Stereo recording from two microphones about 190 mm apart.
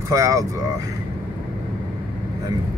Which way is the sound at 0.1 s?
15° right (ahead or behind).